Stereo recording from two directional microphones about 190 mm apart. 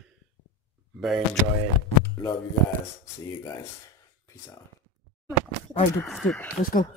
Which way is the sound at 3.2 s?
15° left (ahead or behind).